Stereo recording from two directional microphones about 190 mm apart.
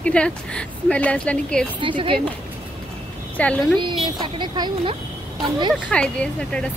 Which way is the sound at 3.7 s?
25° right (ahead or behind).